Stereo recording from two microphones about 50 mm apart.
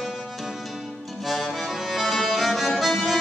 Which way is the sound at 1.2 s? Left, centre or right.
Centre.